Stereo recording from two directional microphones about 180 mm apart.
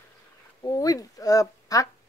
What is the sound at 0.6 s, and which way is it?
Speech, 20° left (ahead or behind).